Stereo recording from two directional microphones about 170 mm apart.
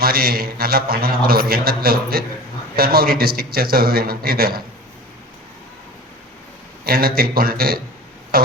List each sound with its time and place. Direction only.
0.0 s a man's voice: 60° right (ahead or behind)
6.8 s a man's voice: 60° right (ahead or behind)